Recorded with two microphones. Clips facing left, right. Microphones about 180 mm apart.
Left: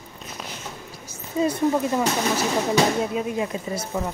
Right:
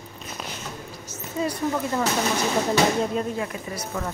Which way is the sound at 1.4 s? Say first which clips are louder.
Left 5 dB; 20° left (ahead or behind).